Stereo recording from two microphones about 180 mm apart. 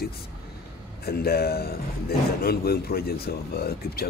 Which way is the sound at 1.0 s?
60° left (ahead or behind).